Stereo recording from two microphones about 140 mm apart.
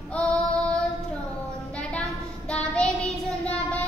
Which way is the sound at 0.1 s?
10° left (ahead or behind).